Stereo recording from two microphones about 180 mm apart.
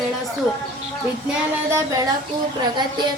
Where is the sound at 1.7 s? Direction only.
15° right (ahead or behind).